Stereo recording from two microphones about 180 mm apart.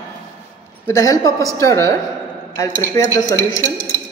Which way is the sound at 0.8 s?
20° left (ahead or behind).